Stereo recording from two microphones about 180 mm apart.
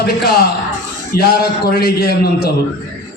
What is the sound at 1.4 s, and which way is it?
Speech, 60° left (ahead or behind).